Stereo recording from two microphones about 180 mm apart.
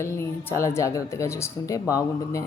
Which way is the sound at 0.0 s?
15° left (ahead or behind).